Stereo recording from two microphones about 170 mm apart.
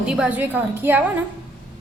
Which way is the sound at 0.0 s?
5° right (ahead or behind).